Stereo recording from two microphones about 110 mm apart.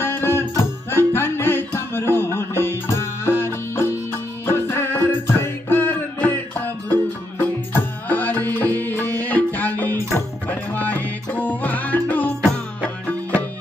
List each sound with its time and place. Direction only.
0.0 s music: 20° left (ahead or behind)